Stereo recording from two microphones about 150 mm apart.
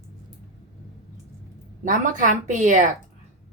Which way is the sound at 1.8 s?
60° right (ahead or behind).